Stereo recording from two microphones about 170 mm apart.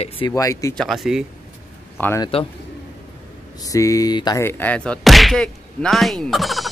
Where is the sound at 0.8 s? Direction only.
Centre (ahead or behind).